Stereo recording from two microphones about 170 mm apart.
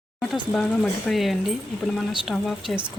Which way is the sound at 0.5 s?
Centre (ahead or behind).